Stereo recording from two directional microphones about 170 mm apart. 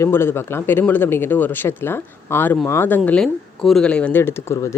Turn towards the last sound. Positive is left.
turn(degrees=15)  # may be behind; listen again after turning